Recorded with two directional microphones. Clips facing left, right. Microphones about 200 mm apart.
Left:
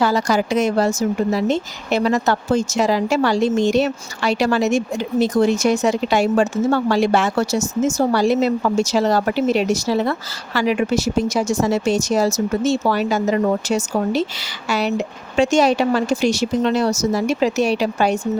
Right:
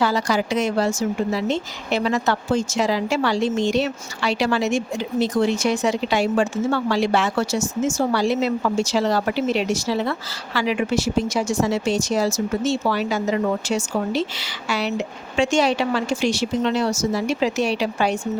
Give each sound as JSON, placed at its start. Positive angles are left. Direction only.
{"t": 0.0, "sound": "speech", "side_deg": 45}